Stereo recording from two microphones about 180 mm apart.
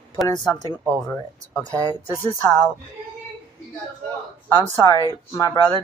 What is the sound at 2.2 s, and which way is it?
Speech, 30° left (ahead or behind).